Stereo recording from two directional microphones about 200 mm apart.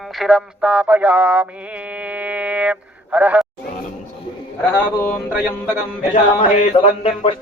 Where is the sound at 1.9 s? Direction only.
5° right (ahead or behind).